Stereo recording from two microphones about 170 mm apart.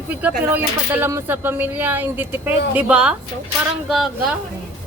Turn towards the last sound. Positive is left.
turn(degrees=0)  # may be behind; listen again after turning